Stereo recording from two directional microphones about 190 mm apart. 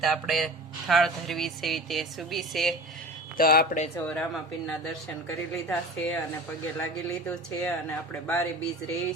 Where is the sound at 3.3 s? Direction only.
50° left (ahead or behind).